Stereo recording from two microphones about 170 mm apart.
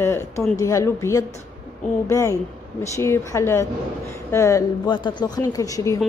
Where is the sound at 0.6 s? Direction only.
20° left (ahead or behind).